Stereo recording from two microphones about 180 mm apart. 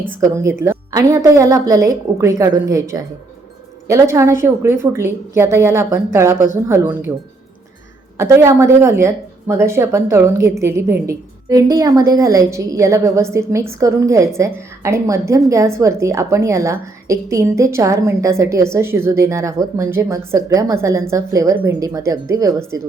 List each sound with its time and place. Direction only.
0.2 s a woman's voice: 15° right (ahead or behind)
8.2 s a woman's voice: 15° right (ahead or behind)